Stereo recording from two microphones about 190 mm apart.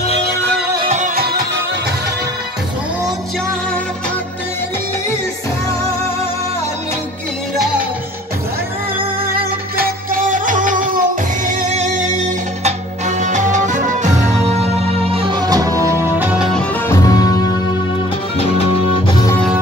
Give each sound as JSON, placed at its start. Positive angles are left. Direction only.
{"t": 0.8, "sound": "music", "side_deg": -40}
{"t": 9.3, "sound": "music", "side_deg": -50}
{"t": 16.8, "sound": "music", "side_deg": 15}
{"t": 19.0, "sound": "music", "side_deg": 25}